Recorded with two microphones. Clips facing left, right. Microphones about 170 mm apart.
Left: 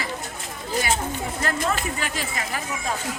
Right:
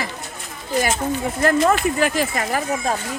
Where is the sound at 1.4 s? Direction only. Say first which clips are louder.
Right 10 dB; 50° right (ahead or behind).